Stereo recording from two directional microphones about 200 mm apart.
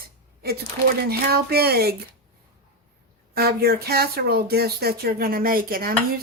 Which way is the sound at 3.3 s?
50° right (ahead or behind).